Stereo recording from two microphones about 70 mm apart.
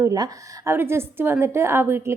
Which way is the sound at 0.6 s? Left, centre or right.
Right.